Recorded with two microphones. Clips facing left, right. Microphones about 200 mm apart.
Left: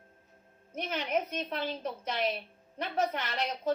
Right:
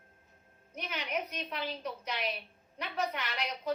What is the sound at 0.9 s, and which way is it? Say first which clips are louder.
Speech: left 5 dB; 50° left (ahead or behind).